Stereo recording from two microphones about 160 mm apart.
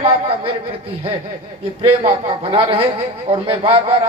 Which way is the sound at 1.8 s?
35° right (ahead or behind).